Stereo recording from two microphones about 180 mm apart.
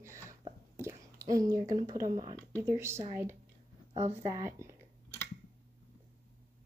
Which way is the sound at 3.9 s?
35° right (ahead or behind).